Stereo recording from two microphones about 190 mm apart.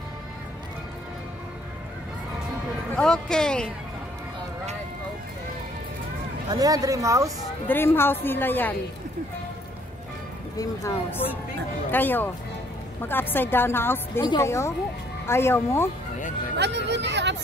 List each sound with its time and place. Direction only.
3.0 s speech: 5° left (ahead or behind)
6.5 s speech: 20° right (ahead or behind)
7.6 s a woman's voice: 10° left (ahead or behind)
10.6 s a woman's voice: 15° left (ahead or behind)
16.5 s speech: 65° right (ahead or behind)